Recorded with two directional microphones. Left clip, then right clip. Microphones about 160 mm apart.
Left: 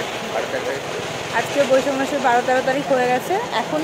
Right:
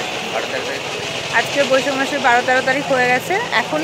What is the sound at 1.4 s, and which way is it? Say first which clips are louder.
Speech: right 1 dB; centre (ahead or behind).